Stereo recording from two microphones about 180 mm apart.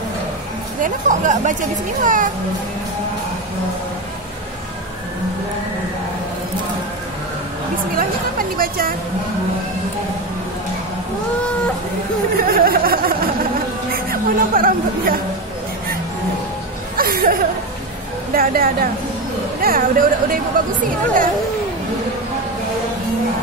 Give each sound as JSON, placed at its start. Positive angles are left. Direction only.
{"t": 0.8, "sound": "speech", "side_deg": -45}
{"t": 8.0, "sound": "a woman's voice", "side_deg": -55}
{"t": 12.4, "sound": "a woman's voice", "side_deg": -55}
{"t": 16.9, "sound": "chuckle", "side_deg": -55}
{"t": 18.3, "sound": "a woman's voice", "side_deg": -55}